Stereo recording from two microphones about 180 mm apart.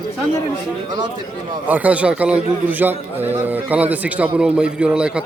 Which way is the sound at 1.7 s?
10° right (ahead or behind).